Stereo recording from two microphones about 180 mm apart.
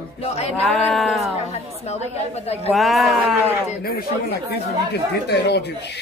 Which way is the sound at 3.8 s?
60° left (ahead or behind).